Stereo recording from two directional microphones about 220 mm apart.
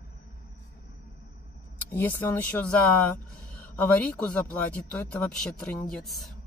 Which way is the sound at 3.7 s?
10° left (ahead or behind).